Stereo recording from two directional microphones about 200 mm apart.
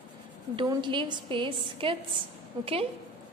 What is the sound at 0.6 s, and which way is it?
A woman's voice, 25° right (ahead or behind).